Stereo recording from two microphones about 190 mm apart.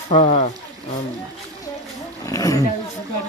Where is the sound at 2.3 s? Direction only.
20° left (ahead or behind).